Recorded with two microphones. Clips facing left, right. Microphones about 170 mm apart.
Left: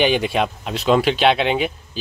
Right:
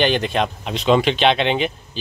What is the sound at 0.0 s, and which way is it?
Speech, 10° left (ahead or behind).